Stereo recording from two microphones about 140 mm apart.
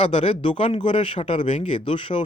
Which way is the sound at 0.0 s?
45° left (ahead or behind).